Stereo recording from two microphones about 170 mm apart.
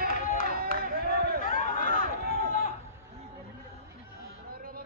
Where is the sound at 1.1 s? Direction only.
65° right (ahead or behind).